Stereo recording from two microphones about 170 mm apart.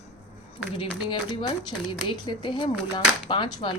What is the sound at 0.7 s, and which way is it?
A woman's voice, 30° left (ahead or behind).